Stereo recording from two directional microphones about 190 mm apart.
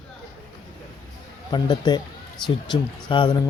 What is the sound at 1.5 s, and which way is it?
Speech, 20° left (ahead or behind).